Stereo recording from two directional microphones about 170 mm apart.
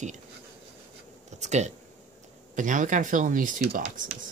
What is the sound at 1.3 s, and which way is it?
Speech, 40° right (ahead or behind).